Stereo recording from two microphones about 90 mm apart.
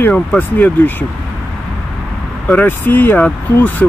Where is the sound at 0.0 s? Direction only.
20° left (ahead or behind).